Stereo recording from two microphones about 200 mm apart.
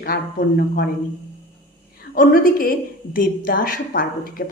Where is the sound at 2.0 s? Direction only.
45° left (ahead or behind).